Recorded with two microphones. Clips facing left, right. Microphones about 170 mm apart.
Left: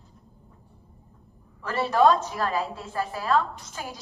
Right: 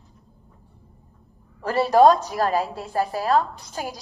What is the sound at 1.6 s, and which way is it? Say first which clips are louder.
A woman's voice: right 5 dB; 40° right (ahead or behind).